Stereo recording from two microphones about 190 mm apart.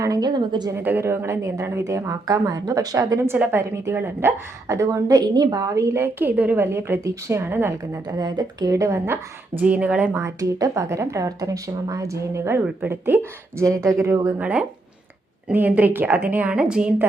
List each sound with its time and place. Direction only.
0.0 s a woman's voice: 20° right (ahead or behind)
0.8 s a woman's voice: 10° right (ahead or behind)